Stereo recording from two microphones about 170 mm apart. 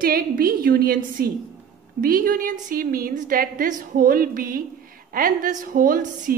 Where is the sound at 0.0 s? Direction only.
60° right (ahead or behind).